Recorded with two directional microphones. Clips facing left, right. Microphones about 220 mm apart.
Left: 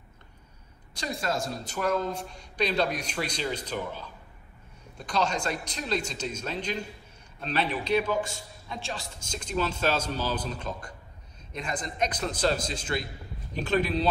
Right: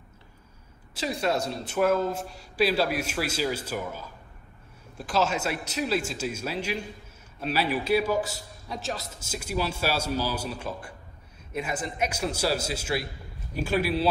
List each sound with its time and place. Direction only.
0.9 s a man's voice: centre (ahead or behind)